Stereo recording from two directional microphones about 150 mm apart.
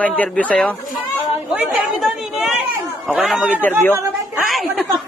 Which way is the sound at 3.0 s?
5° right (ahead or behind).